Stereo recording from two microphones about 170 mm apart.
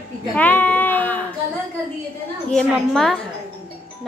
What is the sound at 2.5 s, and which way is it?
Speech, centre (ahead or behind).